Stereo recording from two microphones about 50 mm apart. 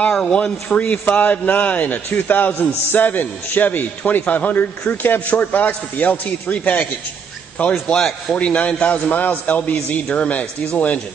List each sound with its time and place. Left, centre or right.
0.1 s a man's voice: left
7.9 s speech: centre
8.4 s speech: left